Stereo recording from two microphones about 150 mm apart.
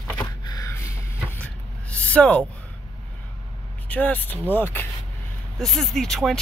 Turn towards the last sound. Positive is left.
turn(degrees=0)  # may be behind; listen again after turning